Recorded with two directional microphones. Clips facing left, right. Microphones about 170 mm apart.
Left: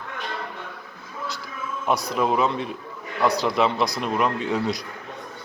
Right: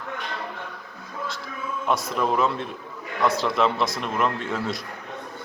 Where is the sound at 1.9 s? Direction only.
Centre (ahead or behind).